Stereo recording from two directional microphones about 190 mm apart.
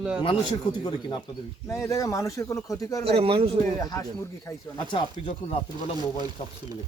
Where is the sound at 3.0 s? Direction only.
30° right (ahead or behind).